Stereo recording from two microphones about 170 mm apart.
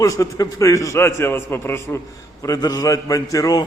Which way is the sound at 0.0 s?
20° left (ahead or behind).